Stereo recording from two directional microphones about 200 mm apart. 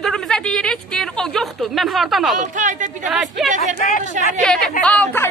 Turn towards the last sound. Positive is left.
turn(degrees=5)  # may be behind; listen again after turning